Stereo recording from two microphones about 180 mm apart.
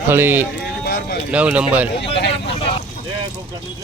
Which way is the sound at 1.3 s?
5° right (ahead or behind).